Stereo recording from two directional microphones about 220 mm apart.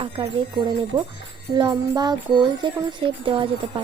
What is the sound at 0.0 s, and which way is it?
Music, 25° right (ahead or behind).